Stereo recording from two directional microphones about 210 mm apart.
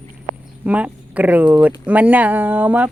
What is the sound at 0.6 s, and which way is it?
Speech, 5° right (ahead or behind).